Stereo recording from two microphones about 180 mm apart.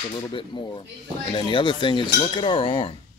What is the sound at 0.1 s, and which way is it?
Speech, 25° left (ahead or behind).